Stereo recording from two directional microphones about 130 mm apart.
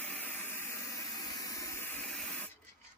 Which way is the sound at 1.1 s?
30° left (ahead or behind).